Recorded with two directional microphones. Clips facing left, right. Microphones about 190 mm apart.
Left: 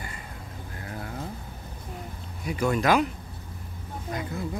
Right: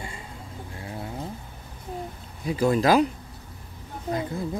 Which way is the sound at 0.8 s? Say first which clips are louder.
Right 2 dB; 25° right (ahead or behind).